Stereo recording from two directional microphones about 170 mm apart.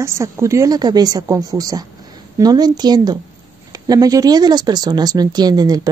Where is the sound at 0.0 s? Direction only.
15° right (ahead or behind).